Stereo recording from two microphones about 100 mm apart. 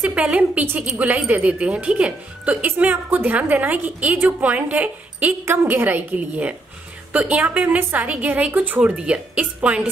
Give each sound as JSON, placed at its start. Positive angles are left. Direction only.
{"t": 0.0, "sound": "a woman's voice", "side_deg": -10}